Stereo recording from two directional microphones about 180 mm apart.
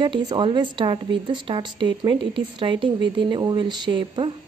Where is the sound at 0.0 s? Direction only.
25° right (ahead or behind).